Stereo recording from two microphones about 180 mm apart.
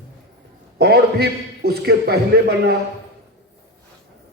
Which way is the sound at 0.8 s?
60° right (ahead or behind).